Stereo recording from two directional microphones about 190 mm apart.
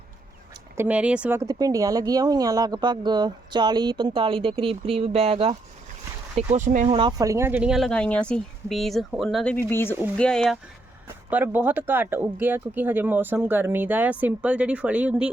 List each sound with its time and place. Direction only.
0.8 s speech: 5° right (ahead or behind)
11.3 s speech: 10° right (ahead or behind)